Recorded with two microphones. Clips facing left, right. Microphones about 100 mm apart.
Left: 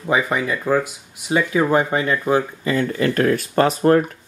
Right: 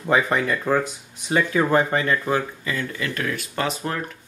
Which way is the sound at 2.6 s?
35° left (ahead or behind).